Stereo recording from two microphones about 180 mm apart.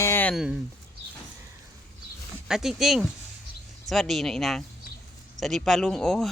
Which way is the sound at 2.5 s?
Centre (ahead or behind).